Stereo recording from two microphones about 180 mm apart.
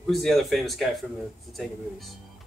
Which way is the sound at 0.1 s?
Centre (ahead or behind).